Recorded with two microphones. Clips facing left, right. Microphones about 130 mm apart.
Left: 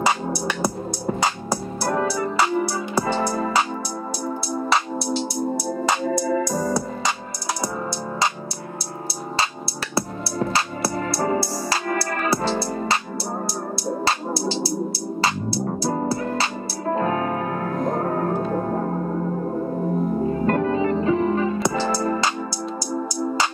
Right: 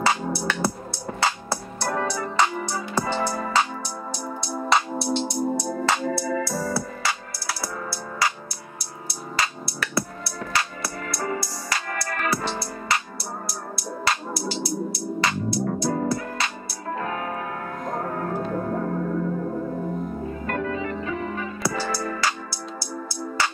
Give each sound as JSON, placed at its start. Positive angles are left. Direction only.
{"t": 0.0, "sound": "music", "side_deg": 15}
{"t": 4.6, "sound": "music", "side_deg": 0}
{"t": 9.4, "sound": "music", "side_deg": 30}
{"t": 14.0, "sound": "music", "side_deg": 30}
{"t": 18.4, "sound": "gong", "side_deg": 40}
{"t": 20.4, "sound": "music", "side_deg": 30}